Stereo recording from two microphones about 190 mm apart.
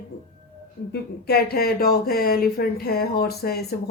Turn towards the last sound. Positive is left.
turn(degrees=55)  # may be behind; listen again after turning